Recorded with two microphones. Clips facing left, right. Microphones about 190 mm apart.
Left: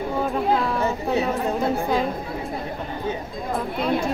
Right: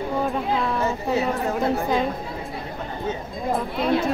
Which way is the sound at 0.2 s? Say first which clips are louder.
Left 4 dB; centre (ahead or behind).